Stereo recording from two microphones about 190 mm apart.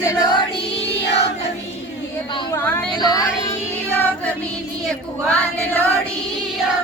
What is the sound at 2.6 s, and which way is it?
Speech, 10° left (ahead or behind).